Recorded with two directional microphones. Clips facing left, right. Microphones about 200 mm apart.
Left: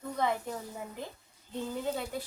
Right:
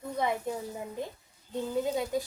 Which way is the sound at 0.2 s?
15° right (ahead or behind).